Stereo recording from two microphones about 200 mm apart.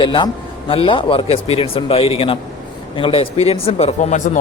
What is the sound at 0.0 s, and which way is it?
Speech, 25° left (ahead or behind).